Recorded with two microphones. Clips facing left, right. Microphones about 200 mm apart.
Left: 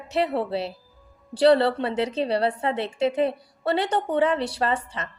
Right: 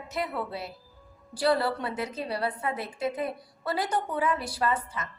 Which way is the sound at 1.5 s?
70° left (ahead or behind).